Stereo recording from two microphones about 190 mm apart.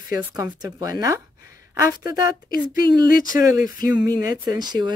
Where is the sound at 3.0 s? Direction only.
50° left (ahead or behind).